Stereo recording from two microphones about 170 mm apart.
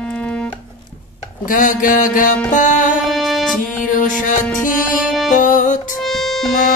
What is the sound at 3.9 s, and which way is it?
Music, 50° left (ahead or behind).